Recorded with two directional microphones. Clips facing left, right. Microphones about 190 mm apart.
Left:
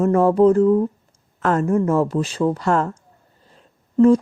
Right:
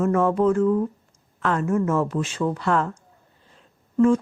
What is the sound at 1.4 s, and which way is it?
Speech, 45° left (ahead or behind).